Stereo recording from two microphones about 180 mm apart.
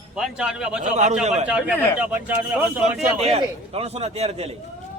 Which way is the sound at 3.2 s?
35° right (ahead or behind).